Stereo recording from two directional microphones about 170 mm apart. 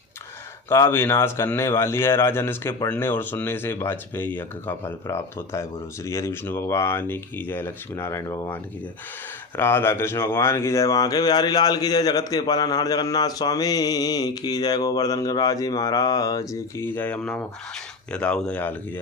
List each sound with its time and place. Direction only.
0.7 s speech: 15° left (ahead or behind)
9.6 s speech: 15° left (ahead or behind)